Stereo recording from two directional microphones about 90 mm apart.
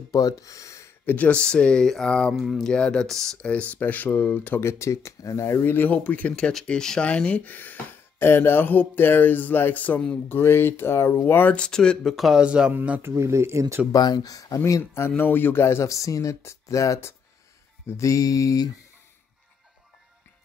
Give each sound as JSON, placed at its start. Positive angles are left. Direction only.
{"t": 0.1, "sound": "speech", "side_deg": 45}
{"t": 1.0, "sound": "speech", "side_deg": 15}
{"t": 2.4, "sound": "speech", "side_deg": -5}
{"t": 2.7, "sound": "speech", "side_deg": 10}
{"t": 10.2, "sound": "speech", "side_deg": 25}
{"t": 11.5, "sound": "speech", "side_deg": 10}
{"t": 13.0, "sound": "speech", "side_deg": -30}
{"t": 13.9, "sound": "speech", "side_deg": 45}
{"t": 14.6, "sound": "speech", "side_deg": 25}